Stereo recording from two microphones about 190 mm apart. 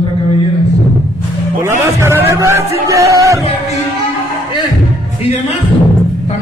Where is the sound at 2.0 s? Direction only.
15° right (ahead or behind).